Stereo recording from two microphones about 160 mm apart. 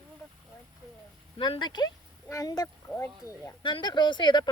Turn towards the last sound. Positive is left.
turn(degrees=30)  # may be behind; listen again after turning